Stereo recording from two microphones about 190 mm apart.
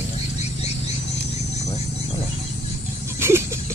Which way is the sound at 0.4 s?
35° left (ahead or behind).